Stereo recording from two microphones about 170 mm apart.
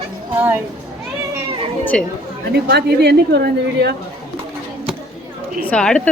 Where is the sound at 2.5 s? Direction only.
75° right (ahead or behind).